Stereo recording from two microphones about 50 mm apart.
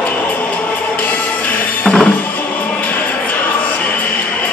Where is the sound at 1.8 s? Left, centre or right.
Centre.